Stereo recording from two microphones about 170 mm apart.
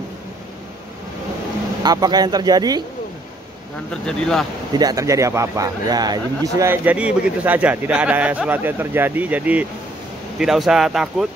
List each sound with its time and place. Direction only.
1.8 s speech: 25° right (ahead or behind)
3.9 s speech: 5° left (ahead or behind)
4.7 s speech: 20° right (ahead or behind); by 11.2 s centre (ahead or behind)